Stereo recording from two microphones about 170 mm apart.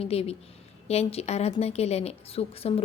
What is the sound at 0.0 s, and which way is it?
A woman's voice, 35° left (ahead or behind).